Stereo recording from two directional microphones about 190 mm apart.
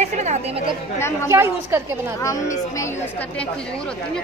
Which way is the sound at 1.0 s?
15° left (ahead or behind).